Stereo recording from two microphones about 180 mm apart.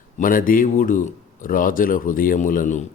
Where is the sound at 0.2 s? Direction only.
50° left (ahead or behind).